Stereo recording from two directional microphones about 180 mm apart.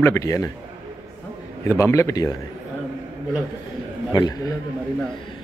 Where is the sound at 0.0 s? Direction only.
15° left (ahead or behind).